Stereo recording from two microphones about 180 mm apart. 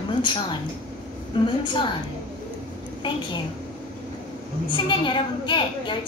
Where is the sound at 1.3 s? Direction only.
30° left (ahead or behind).